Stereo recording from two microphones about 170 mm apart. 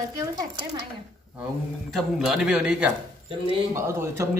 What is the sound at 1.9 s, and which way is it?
A man's voice, centre (ahead or behind).